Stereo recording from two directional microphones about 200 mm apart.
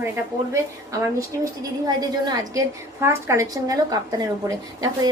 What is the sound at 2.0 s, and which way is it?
A woman's voice, 20° right (ahead or behind).